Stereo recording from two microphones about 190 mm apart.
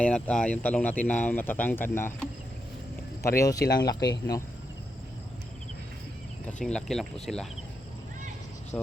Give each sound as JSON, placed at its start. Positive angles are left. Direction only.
{"t": 0.0, "sound": "speech", "side_deg": 5}
{"t": 3.2, "sound": "speech", "side_deg": 15}
{"t": 6.6, "sound": "speech", "side_deg": 5}
{"t": 8.7, "sound": "speech", "side_deg": 10}